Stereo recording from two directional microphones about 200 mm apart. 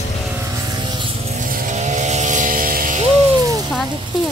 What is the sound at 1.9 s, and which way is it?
Vehicle, 35° right (ahead or behind).